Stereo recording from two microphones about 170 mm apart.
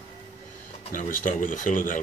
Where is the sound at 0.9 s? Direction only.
50° left (ahead or behind).